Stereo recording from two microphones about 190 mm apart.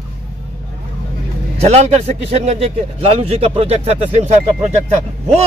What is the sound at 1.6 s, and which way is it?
A man's voice, 35° right (ahead or behind).